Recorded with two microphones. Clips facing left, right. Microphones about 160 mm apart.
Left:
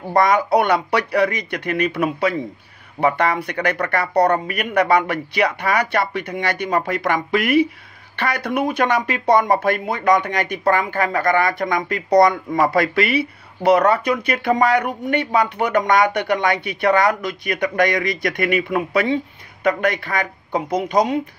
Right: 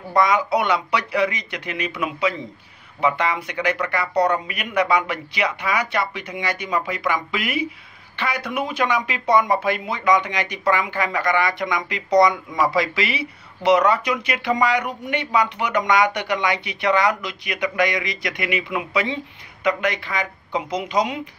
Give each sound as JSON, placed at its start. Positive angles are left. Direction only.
{"t": 0.1, "sound": "speech", "side_deg": 60}
{"t": 9.2, "sound": "speech", "side_deg": 40}